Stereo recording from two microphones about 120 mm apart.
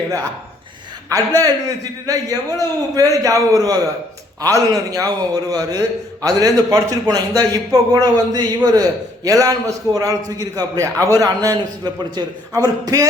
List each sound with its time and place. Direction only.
1.1 s a man's voice: 30° right (ahead or behind)